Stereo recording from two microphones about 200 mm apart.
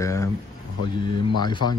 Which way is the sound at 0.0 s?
15° left (ahead or behind).